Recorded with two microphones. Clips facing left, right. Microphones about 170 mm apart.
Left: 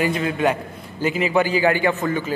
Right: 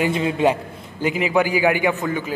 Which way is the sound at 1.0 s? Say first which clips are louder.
Even; 15° right (ahead or behind).